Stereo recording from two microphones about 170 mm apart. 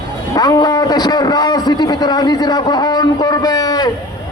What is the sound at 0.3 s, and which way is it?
A man's voice, 25° left (ahead or behind).